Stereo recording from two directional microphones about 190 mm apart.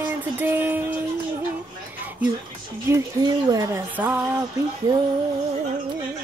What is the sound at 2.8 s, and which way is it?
Speech, 20° right (ahead or behind).